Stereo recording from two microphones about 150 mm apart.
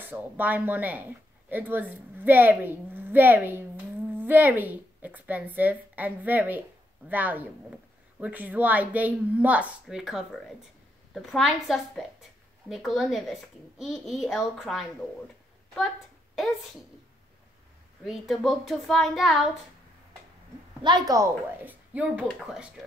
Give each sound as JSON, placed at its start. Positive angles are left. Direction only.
{"t": 0.0, "sound": "a woman's voice", "side_deg": -10}
{"t": 18.0, "sound": "a woman's voice", "side_deg": 0}
{"t": 20.8, "sound": "a woman's voice", "side_deg": -25}
{"t": 21.9, "sound": "a woman's voice", "side_deg": -10}